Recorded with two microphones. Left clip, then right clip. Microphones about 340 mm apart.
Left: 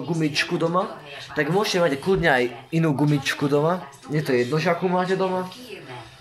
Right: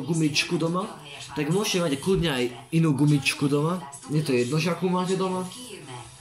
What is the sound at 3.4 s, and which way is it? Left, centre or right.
Speech, left.